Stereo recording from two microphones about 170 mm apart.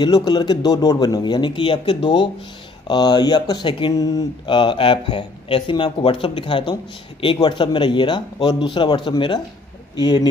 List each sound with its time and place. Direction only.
0.0 s speech: 25° left (ahead or behind)